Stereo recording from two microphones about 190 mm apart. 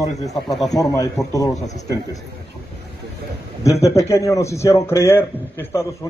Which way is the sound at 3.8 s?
15° left (ahead or behind).